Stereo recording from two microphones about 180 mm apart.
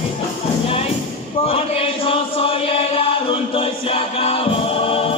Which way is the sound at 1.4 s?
30° left (ahead or behind).